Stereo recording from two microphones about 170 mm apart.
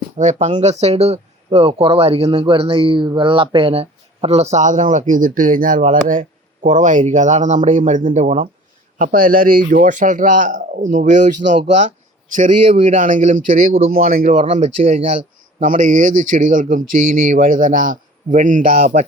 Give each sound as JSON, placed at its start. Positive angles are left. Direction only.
{"t": 0.2, "sound": "speech", "side_deg": -45}
{"t": 9.0, "sound": "speech", "side_deg": -55}